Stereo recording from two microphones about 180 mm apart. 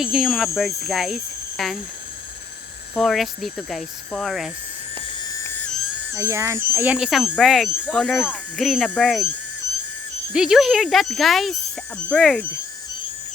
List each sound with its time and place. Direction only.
0.0 s cricket: centre (ahead or behind)
2.9 s cricket: centre (ahead or behind)
6.1 s speech: 15° right (ahead or behind)
6.7 s cricket: 5° right (ahead or behind)
10.3 s cricket: 5° right (ahead or behind)